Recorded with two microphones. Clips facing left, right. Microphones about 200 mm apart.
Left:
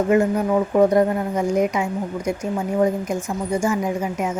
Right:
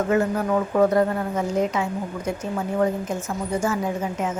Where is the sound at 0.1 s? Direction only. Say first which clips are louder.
Left 4 dB; 15° left (ahead or behind).